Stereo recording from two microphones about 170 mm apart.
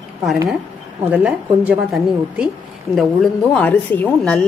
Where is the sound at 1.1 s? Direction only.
10° right (ahead or behind).